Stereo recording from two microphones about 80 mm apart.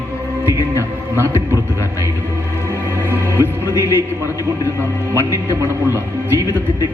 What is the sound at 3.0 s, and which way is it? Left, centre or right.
A man's voice, right.